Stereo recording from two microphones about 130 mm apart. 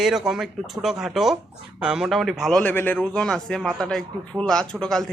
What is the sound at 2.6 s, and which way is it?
Speech, 15° left (ahead or behind).